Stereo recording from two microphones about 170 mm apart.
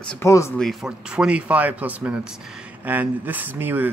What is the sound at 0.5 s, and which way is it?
Speech, centre (ahead or behind).